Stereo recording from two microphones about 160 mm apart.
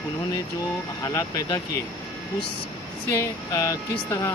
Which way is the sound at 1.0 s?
20° left (ahead or behind).